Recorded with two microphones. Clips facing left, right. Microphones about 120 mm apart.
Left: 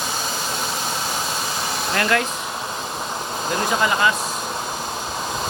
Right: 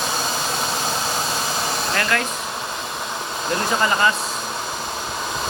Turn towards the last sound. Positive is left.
turn(degrees=5)  # may be behind; listen again after turning